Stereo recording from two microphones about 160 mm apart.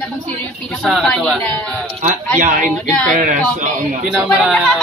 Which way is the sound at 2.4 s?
50° right (ahead or behind).